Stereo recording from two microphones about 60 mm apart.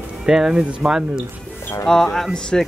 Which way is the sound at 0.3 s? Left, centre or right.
Centre.